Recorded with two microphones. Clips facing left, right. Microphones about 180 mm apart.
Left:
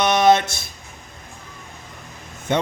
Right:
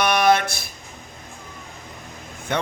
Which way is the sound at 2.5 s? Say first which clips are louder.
Left 4 dB; 25° left (ahead or behind).